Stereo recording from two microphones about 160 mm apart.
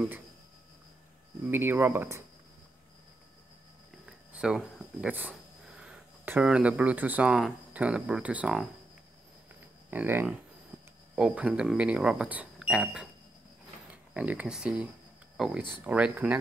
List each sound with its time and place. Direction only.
1.5 s speech: 15° right (ahead or behind)
4.3 s speech: 5° right (ahead or behind)
9.8 s speech: 15° right (ahead or behind)
14.1 s speech: 10° right (ahead or behind)